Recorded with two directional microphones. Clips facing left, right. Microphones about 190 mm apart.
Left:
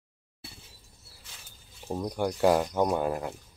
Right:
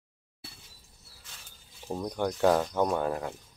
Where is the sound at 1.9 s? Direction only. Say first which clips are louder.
Left 1 dB; 5° left (ahead or behind).